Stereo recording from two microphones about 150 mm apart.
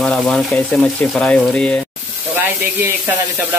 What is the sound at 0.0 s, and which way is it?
Speech, 5° left (ahead or behind).